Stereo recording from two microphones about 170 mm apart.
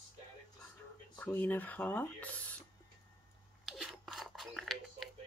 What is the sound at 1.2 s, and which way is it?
Speech, 10° left (ahead or behind).